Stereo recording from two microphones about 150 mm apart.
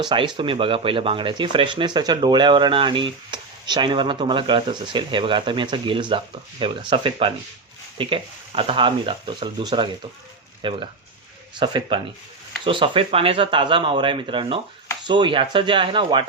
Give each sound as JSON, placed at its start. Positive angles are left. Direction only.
{"t": 0.0, "sound": "speech", "side_deg": -30}